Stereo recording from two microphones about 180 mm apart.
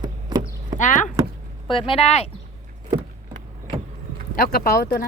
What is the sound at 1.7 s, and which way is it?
Speech, 30° left (ahead or behind).